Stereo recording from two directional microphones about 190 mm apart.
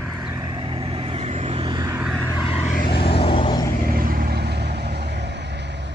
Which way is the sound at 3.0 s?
30° left (ahead or behind).